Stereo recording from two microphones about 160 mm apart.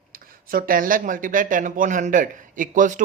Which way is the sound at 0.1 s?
65° right (ahead or behind).